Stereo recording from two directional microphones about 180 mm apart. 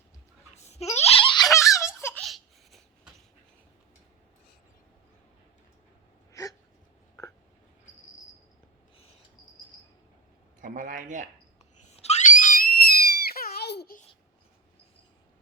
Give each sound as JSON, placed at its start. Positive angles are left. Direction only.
{"t": 0.5, "sound": "baby laughter", "side_deg": 35}
{"t": 1.5, "sound": "giggle", "side_deg": 15}
{"t": 2.2, "sound": "cat", "side_deg": 0}
{"t": 7.2, "sound": "a sound", "side_deg": 20}
{"t": 10.6, "sound": "a man's voice", "side_deg": -50}
{"t": 11.8, "sound": "screaming", "side_deg": 40}